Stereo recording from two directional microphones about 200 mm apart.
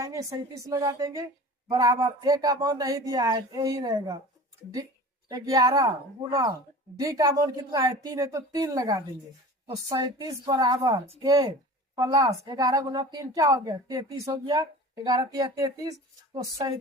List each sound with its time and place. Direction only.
0.0 s a woman's voice: 15° right (ahead or behind)
5.3 s a woman's voice: 20° right (ahead or behind)
7.0 s a woman's voice: 15° right (ahead or behind)